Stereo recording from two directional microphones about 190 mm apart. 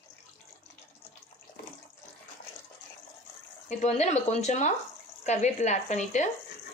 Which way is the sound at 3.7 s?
35° left (ahead or behind).